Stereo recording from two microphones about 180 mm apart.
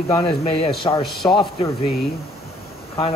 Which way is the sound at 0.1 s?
35° left (ahead or behind).